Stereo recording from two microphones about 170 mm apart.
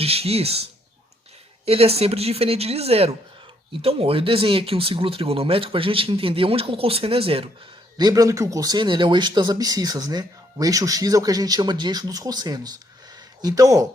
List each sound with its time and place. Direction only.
0.0 s speech: 35° right (ahead or behind)
7.9 s speech: 20° right (ahead or behind)